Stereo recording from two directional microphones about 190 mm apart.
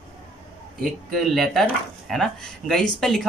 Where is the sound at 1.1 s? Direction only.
Centre (ahead or behind).